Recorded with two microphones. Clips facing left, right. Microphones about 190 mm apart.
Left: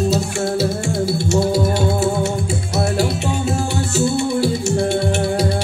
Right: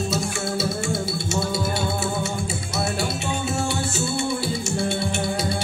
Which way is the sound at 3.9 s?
65° left (ahead or behind).